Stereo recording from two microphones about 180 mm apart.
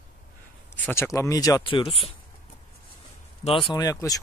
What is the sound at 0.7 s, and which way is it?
Speech, 10° left (ahead or behind).